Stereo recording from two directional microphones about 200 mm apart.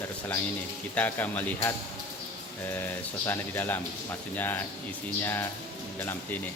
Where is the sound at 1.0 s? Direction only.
10° left (ahead or behind).